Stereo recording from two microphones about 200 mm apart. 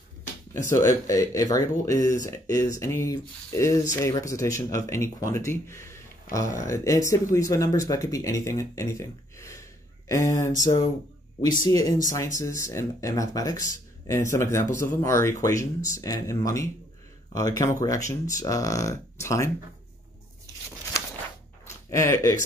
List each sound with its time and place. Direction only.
0.5 s speech: 15° left (ahead or behind)
6.3 s speech: 45° left (ahead or behind)
6.6 s speech: 15° left (ahead or behind)
21.9 s speech: 15° left (ahead or behind)